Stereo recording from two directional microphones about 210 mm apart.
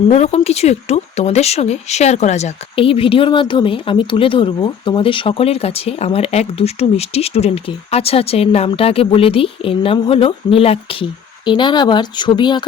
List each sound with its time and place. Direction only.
0.1 s speech: 30° left (ahead or behind)